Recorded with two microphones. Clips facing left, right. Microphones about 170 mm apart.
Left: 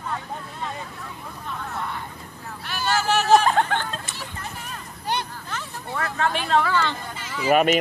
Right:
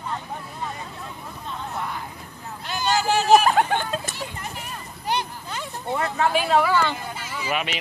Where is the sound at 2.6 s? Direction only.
20° right (ahead or behind).